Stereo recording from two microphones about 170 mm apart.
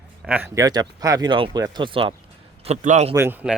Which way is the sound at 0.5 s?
20° right (ahead or behind).